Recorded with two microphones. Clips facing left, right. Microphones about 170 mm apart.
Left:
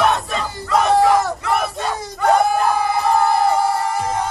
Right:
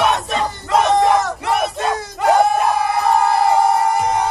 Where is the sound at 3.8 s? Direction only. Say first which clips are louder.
Right 4 dB; 70° right (ahead or behind).